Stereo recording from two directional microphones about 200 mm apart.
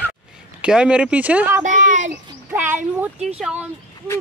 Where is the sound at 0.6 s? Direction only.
5° right (ahead or behind).